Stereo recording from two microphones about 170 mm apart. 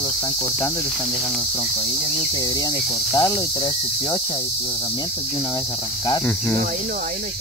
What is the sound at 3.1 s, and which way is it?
Cricket, 25° left (ahead or behind).